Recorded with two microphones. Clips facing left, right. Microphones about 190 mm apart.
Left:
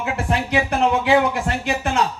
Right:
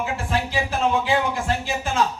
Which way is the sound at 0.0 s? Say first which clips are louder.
Left 2 dB; 65° left (ahead or behind).